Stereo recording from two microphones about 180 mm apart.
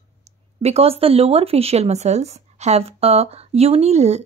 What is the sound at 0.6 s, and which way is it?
Speech, 35° right (ahead or behind).